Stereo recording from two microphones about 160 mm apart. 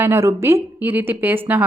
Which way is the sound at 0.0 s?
15° right (ahead or behind).